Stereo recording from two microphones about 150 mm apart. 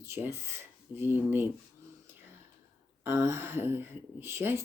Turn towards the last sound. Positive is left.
turn(degrees=-15)  # may be behind; listen again after turning